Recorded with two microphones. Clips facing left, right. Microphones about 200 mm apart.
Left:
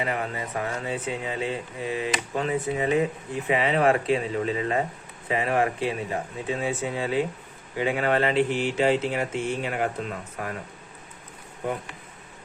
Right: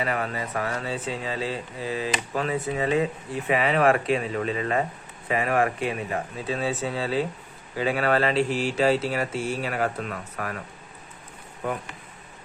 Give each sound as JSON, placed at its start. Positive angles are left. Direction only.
{"t": 0.0, "sound": "speech", "side_deg": 20}
{"t": 1.8, "sound": "speech", "side_deg": -30}
{"t": 2.3, "sound": "speech", "side_deg": 20}